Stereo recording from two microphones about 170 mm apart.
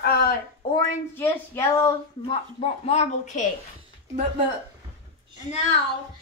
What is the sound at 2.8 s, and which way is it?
Speech, 40° left (ahead or behind).